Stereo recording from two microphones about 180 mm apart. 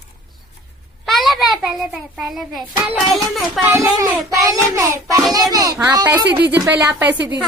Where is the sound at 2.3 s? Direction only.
Centre (ahead or behind).